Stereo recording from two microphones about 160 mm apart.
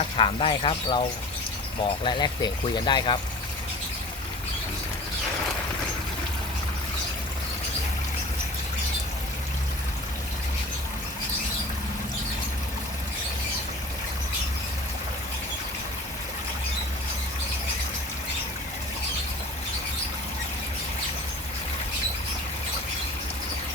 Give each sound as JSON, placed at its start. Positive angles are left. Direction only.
{"t": 0.2, "sound": "speech", "side_deg": 35}
{"t": 2.0, "sound": "speech", "side_deg": 30}